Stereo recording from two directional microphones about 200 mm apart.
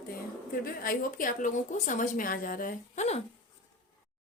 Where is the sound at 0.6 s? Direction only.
45° left (ahead or behind).